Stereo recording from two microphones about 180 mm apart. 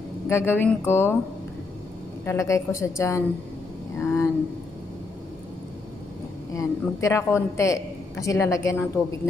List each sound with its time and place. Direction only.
0.3 s a man's voice: 15° left (ahead or behind)
2.2 s a man's voice: 15° left (ahead or behind)
6.5 s a man's voice: 15° left (ahead or behind)